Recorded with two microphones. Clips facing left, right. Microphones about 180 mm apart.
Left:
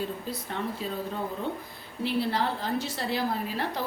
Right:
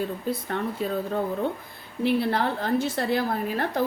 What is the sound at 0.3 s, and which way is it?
Speech, 55° right (ahead or behind).